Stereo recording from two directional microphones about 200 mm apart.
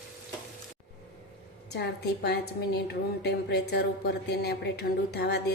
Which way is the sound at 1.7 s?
55° left (ahead or behind).